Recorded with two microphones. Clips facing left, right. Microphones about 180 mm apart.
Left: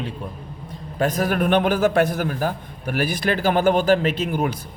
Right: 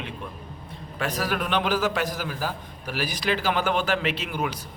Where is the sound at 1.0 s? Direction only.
50° left (ahead or behind).